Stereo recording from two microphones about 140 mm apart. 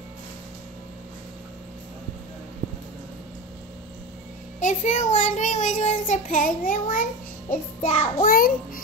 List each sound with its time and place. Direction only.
4.6 s child singing: 60° left (ahead or behind)
7.8 s child singing: 50° left (ahead or behind)
8.2 s a child's voice: 90° left